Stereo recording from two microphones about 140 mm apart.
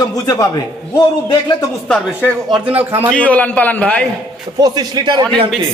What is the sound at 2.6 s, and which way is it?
Speech, 10° right (ahead or behind).